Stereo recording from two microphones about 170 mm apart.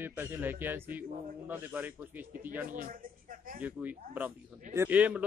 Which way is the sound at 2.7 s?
55° right (ahead or behind).